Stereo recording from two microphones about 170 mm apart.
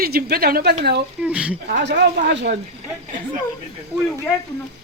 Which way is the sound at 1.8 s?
85° right.